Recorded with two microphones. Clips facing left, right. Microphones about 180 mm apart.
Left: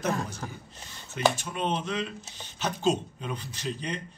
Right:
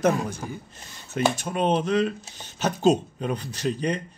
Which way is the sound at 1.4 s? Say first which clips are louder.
Right 7 dB; 45° right (ahead or behind).